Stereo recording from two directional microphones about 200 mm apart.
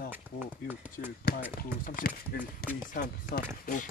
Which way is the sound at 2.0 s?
50° left (ahead or behind).